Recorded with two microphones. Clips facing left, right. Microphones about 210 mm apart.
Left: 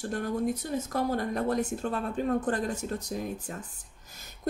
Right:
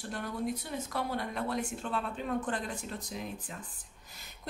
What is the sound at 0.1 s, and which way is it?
A woman's voice, 45° left (ahead or behind).